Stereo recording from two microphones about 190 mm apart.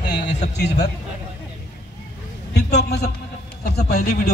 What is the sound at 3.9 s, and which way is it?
Speech, 40° left (ahead or behind).